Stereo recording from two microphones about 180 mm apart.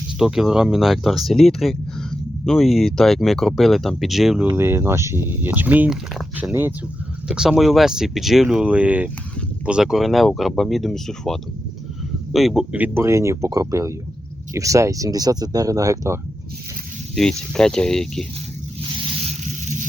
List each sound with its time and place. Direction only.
0.2 s speech: 5° right (ahead or behind)
4.4 s speech: 15° right (ahead or behind)
17.2 s speech: 5° left (ahead or behind)
19.2 s a sound: 40° right (ahead or behind)